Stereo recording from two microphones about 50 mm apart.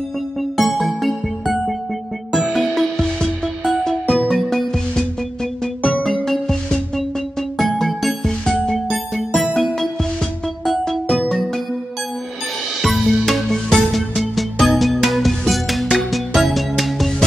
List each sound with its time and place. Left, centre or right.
0.4 s music: centre
8.7 s music: centre
12.8 s music: centre